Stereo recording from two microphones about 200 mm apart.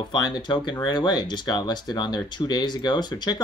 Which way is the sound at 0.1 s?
20° left (ahead or behind).